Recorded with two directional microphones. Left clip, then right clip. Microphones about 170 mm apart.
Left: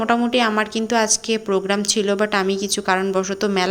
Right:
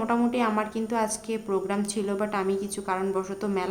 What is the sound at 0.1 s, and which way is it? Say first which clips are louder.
A woman's voice: left 8 dB; 20° left (ahead or behind).